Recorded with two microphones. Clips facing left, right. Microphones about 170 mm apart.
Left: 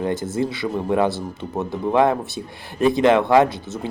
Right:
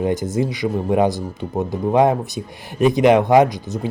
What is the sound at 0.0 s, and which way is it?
Speech, 20° right (ahead or behind).